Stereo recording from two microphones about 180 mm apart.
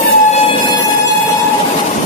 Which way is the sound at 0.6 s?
20° left (ahead or behind).